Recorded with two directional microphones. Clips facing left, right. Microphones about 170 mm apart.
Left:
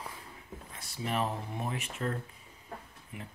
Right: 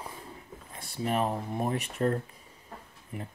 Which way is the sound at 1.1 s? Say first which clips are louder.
Right 4 dB; 40° right (ahead or behind).